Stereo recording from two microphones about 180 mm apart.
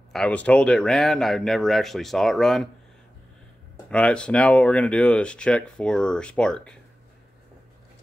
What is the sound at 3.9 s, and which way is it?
Speech, 5° left (ahead or behind).